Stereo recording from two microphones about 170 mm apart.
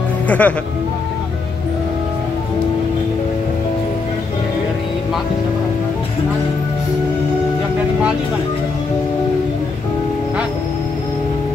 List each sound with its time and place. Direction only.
0.3 s speech: 10° left (ahead or behind)